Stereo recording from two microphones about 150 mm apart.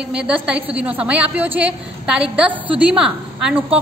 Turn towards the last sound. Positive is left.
turn(degrees=-5)  # may be behind; listen again after turning